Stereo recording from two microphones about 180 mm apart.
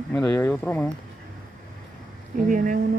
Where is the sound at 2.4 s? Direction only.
45° right (ahead or behind).